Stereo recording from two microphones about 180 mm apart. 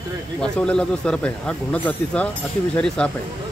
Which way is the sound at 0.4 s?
5° left (ahead or behind).